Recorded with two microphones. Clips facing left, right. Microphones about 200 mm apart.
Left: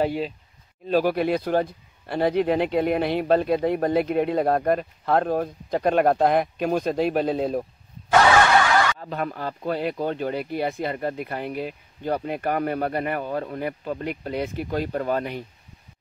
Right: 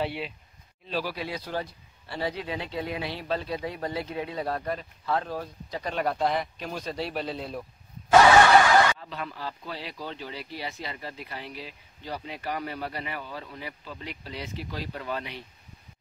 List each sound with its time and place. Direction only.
0.0 s speech: 40° left (ahead or behind)
8.9 s speech: 50° left (ahead or behind)